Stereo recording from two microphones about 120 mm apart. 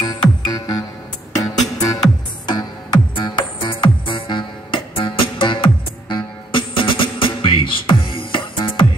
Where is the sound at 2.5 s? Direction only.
35° left (ahead or behind).